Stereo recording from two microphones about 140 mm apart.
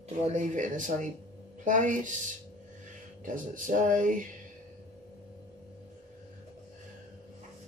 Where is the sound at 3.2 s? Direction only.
70° right (ahead or behind).